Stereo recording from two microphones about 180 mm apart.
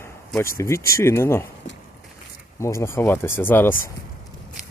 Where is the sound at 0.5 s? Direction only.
15° left (ahead or behind).